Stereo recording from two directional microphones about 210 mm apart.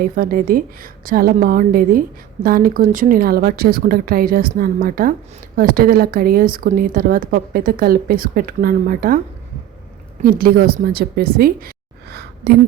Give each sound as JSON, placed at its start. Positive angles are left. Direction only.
{"t": 0.0, "sound": "a woman's voice", "side_deg": -45}
{"t": 10.2, "sound": "a woman's voice", "side_deg": -45}